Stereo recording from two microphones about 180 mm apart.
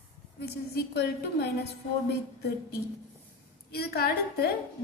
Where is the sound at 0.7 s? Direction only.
70° left (ahead or behind).